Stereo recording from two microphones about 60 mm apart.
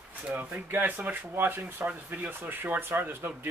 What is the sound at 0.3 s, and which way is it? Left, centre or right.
Speech, right.